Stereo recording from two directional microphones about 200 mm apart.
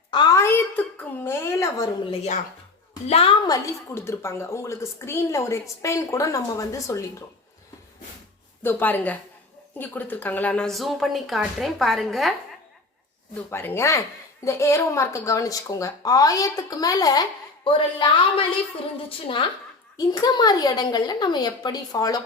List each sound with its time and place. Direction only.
0.1 s a sound: 20° left (ahead or behind)
2.0 s speech: 35° left (ahead or behind); by 7.0 s 15° left (ahead or behind)
8.6 s speech: 10° left (ahead or behind)
13.5 s a woman's voice: 10° left (ahead or behind)